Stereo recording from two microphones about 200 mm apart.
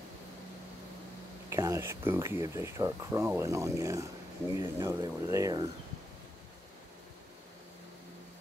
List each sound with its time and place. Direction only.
1.5 s speech: 15° right (ahead or behind)